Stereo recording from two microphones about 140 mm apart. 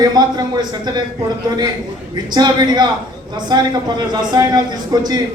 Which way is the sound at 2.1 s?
30° right (ahead or behind).